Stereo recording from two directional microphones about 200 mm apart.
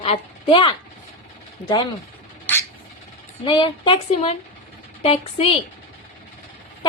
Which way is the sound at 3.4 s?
25° left (ahead or behind).